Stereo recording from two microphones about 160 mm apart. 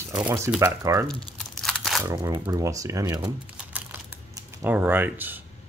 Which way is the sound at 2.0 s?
20° right (ahead or behind).